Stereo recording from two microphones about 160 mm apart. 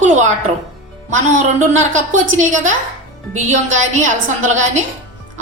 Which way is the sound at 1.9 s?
50° right (ahead or behind).